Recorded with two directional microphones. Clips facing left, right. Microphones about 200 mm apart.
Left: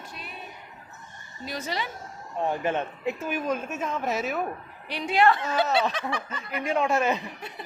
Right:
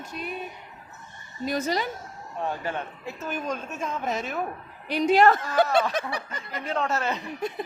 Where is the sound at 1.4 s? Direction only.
45° right (ahead or behind).